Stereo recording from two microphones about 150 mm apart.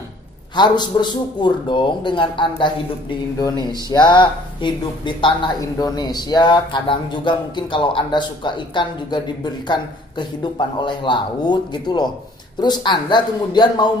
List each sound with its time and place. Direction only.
0.6 s a man's voice: 30° left (ahead or behind)